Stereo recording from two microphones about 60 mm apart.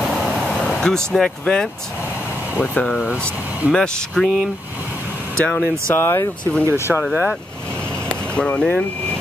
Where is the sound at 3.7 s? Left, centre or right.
Centre.